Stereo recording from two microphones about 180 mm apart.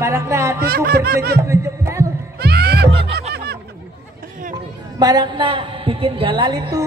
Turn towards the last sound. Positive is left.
turn(degrees=-20)  # may be behind; listen again after turning